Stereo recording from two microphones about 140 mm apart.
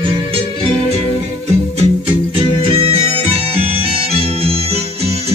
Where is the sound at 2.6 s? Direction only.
45° right (ahead or behind).